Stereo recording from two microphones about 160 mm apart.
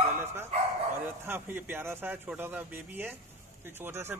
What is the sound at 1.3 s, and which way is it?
A man's voice, 10° right (ahead or behind).